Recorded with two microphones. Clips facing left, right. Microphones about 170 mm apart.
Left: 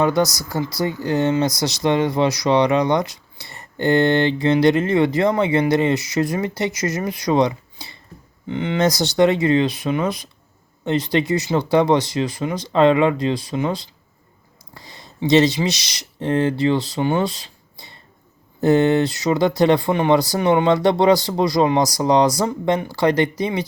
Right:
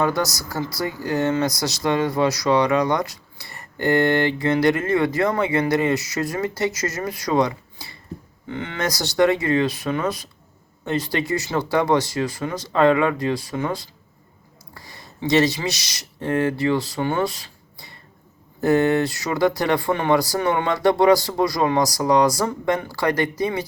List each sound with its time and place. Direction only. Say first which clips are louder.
0.0 s speech: left 4 dB; 20° left (ahead or behind)